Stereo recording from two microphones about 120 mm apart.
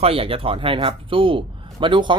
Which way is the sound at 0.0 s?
50° right (ahead or behind).